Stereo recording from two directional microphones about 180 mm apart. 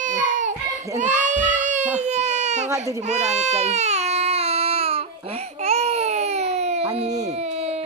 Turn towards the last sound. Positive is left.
turn(degrees=-35)  # may be behind; listen again after turning